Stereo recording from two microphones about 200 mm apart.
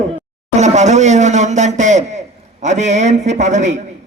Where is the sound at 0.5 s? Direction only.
35° right (ahead or behind).